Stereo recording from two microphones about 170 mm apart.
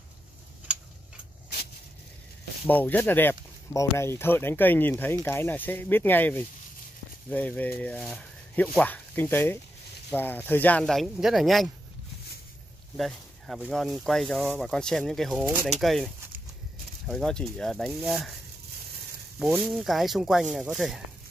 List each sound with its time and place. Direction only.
2.7 s speech: 10° left (ahead or behind)
12.9 s speech: centre (ahead or behind)
17.1 s speech: 5° left (ahead or behind)
19.6 s speech: centre (ahead or behind)